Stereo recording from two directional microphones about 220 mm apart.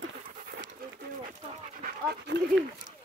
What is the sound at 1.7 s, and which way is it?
Dog, 45° right (ahead or behind).